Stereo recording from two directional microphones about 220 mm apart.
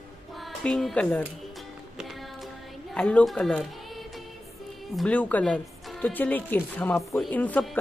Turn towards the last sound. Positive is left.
turn(degrees=5)  # may be behind; listen again after turning